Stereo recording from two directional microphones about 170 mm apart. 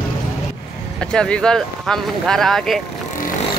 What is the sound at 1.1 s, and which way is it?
Speech, 5° left (ahead or behind).